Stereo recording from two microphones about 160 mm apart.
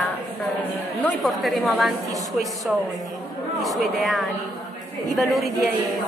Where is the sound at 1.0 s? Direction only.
Centre (ahead or behind).